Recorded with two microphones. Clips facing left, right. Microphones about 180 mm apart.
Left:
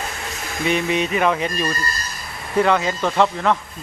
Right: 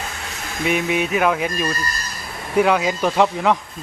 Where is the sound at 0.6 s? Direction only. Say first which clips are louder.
Even; 5° right (ahead or behind).